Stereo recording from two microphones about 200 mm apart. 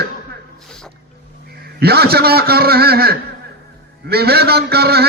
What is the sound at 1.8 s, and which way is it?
A man's voice, 50° right (ahead or behind).